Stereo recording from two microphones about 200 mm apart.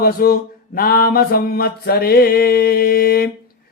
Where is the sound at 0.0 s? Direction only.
45° left (ahead or behind).